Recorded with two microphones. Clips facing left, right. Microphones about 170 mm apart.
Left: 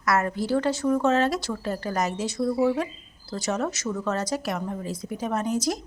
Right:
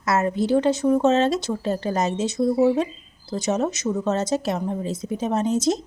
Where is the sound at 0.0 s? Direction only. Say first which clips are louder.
Right 3 dB; 25° right (ahead or behind).